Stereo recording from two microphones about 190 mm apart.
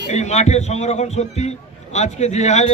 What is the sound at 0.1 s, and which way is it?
A man's voice, 35° left (ahead or behind).